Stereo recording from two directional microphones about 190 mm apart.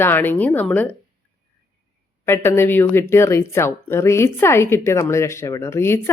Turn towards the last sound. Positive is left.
turn(degrees=15)  # may be behind; listen again after turning